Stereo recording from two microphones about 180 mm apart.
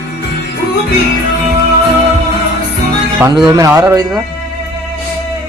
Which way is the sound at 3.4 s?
15° right (ahead or behind).